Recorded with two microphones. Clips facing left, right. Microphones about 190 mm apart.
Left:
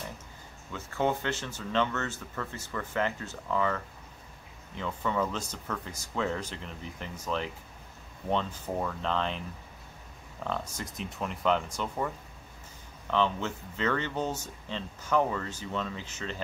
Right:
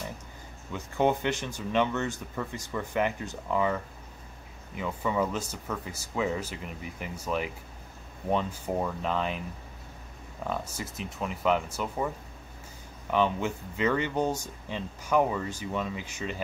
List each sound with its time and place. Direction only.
0.7 s speech: 15° right (ahead or behind)
10.4 s speech: 10° right (ahead or behind)
13.1 s speech: 10° right (ahead or behind)